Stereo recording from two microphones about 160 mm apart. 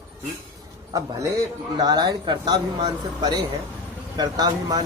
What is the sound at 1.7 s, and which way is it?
Speech, 25° right (ahead or behind).